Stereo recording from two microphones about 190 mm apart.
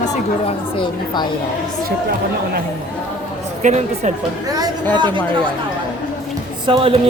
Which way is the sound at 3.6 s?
40° right (ahead or behind).